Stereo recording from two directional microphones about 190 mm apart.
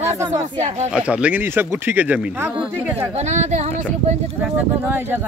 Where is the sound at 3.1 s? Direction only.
35° right (ahead or behind).